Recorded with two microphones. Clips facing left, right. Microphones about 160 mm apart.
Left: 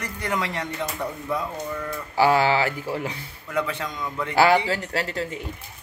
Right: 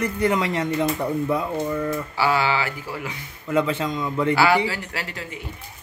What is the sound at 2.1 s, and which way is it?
Speech, 40° left (ahead or behind).